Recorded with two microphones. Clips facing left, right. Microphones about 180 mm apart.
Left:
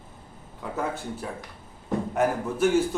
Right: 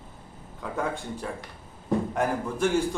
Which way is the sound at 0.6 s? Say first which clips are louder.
Even; 5° left (ahead or behind).